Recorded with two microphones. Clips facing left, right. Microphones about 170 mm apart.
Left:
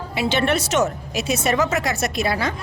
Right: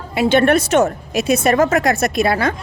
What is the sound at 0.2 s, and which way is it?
Speech, 50° right (ahead or behind).